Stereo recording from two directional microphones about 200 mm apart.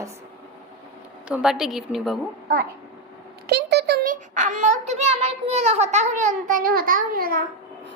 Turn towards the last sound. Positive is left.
turn(degrees=-45)  # may be behind; listen again after turning